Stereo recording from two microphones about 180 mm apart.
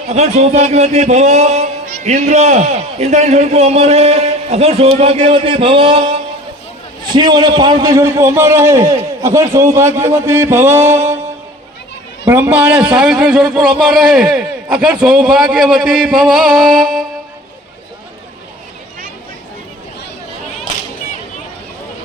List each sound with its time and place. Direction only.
0.1 s a man's voice: 40° right (ahead or behind); by 11.2 s 15° right (ahead or behind)
12.3 s speech: 10° right (ahead or behind)